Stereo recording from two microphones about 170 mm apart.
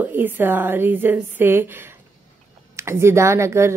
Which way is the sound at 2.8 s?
15° right (ahead or behind).